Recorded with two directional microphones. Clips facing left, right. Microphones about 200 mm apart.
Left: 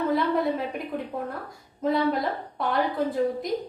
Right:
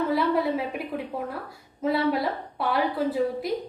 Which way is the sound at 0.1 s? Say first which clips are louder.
Even; 5° right (ahead or behind).